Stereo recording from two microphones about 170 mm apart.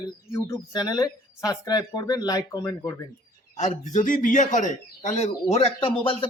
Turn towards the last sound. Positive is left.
turn(degrees=35)  # may be behind; listen again after turning